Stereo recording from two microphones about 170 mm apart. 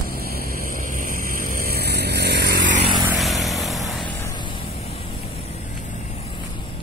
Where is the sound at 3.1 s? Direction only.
Centre (ahead or behind).